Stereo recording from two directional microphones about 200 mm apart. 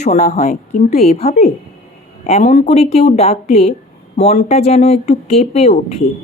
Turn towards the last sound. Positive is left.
turn(degrees=30)  # may be behind; listen again after turning